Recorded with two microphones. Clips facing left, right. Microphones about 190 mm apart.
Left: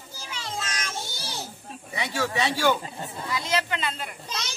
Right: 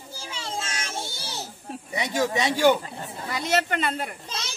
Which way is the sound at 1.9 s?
20° right (ahead or behind).